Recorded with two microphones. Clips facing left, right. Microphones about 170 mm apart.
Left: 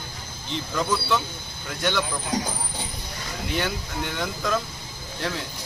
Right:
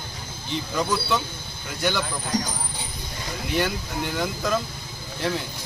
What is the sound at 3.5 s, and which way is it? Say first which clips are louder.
Speech: right 3 dB; centre (ahead or behind).